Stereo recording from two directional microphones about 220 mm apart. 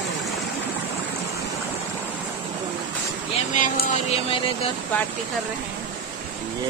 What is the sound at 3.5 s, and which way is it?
Speech, 35° left (ahead or behind).